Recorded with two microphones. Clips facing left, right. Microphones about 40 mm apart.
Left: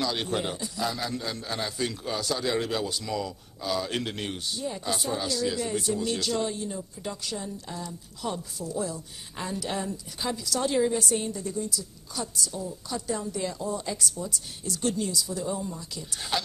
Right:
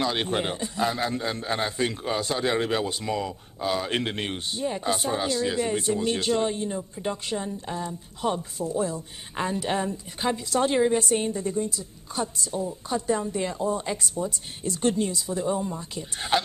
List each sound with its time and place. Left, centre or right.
0.0 s a man's voice: right